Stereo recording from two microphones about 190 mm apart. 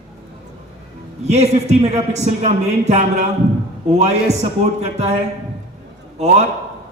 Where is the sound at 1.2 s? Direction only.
35° right (ahead or behind).